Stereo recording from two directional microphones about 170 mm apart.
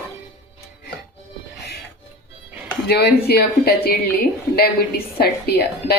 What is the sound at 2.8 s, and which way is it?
A woman's voice, 70° left (ahead or behind).